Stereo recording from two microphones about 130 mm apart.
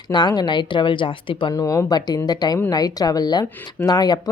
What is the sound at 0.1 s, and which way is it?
Speech, 35° left (ahead or behind).